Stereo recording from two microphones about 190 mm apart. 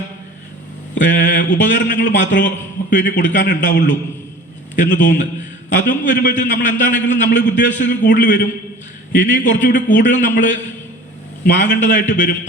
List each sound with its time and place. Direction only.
0.9 s a sound: 45° left (ahead or behind)
1.9 s a man's voice: 45° left (ahead or behind)
11.5 s a man's voice: 40° left (ahead or behind)